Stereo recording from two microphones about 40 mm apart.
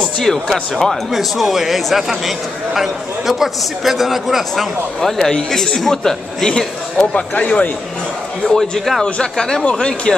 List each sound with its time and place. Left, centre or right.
0.2 s a man's voice: centre
1.1 s a man's voice: centre
5.0 s a man's voice: centre
7.2 s speech: left
8.5 s a man's voice: centre